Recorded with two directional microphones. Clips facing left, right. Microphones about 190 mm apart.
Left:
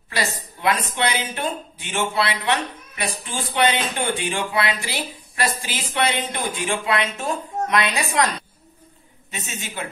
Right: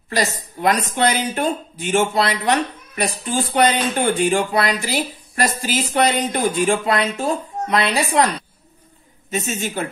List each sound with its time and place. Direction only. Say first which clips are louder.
0.1 s speech: right 5 dB; 45° right (ahead or behind)
9.5 s speech: right 6 dB; 40° right (ahead or behind)